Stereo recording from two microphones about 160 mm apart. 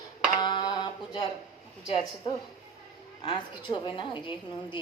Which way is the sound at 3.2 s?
30° left (ahead or behind).